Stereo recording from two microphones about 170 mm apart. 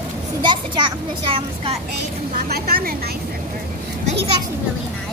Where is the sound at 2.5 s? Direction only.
60° right (ahead or behind).